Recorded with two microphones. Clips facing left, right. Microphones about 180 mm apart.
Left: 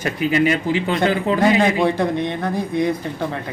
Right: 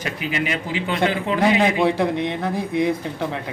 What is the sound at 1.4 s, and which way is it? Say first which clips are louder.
A man's voice: left 1 dB; 5° right (ahead or behind).